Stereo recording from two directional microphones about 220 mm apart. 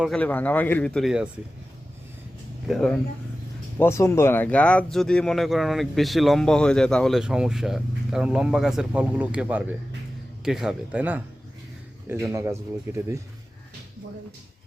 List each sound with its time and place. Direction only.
0.0 s speech: 5° left (ahead or behind)
2.6 s speech: centre (ahead or behind)
3.8 s speech: 10° left (ahead or behind); by 13.0 s 10° right (ahead or behind)